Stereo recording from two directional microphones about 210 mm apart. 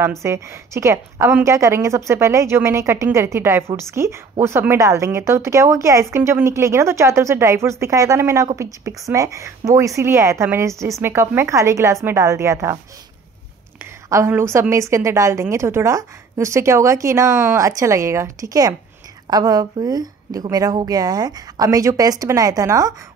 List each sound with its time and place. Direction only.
0.2 s a woman's voice: 15° right (ahead or behind)
14.0 s a woman's voice: 15° right (ahead or behind)